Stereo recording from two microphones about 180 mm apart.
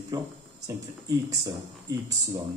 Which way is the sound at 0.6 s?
20° right (ahead or behind).